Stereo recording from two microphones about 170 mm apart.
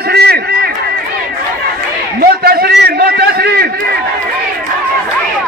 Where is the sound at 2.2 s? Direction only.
65° right (ahead or behind).